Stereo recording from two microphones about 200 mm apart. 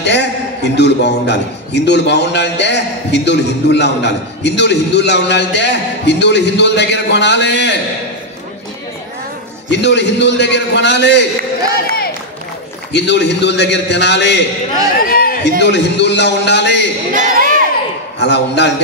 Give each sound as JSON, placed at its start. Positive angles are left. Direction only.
{"t": 0.0, "sound": "a man's voice", "side_deg": 60}
{"t": 9.7, "sound": "a man's voice", "side_deg": 60}
{"t": 12.9, "sound": "a man's voice", "side_deg": 60}
{"t": 15.0, "sound": "a man's voice", "side_deg": 45}
{"t": 15.6, "sound": "a man's voice", "side_deg": 60}
{"t": 17.1, "sound": "crowd", "side_deg": -40}
{"t": 18.2, "sound": "a man's voice", "side_deg": 60}